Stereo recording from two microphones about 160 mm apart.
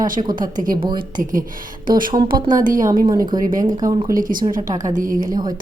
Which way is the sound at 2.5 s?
55° right (ahead or behind).